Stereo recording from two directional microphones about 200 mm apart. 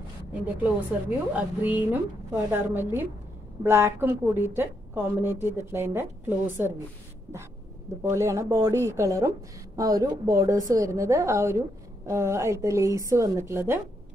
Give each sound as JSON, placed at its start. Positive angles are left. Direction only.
{"t": 0.3, "sound": "a woman's voice", "side_deg": -10}
{"t": 8.0, "sound": "a woman's voice", "side_deg": -15}